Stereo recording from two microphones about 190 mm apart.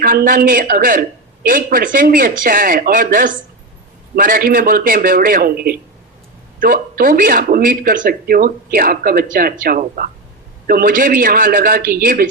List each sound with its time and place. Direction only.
0.0 s speech: 45° right (ahead or behind)